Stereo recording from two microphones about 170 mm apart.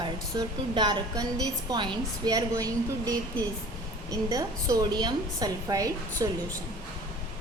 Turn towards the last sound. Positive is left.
turn(degrees=-20)  # may be behind; listen again after turning